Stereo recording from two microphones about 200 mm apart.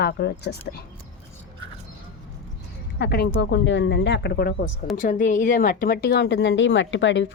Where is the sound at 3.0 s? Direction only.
55° left (ahead or behind).